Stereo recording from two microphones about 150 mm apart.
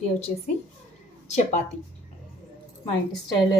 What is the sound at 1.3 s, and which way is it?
Speech, 50° left (ahead or behind).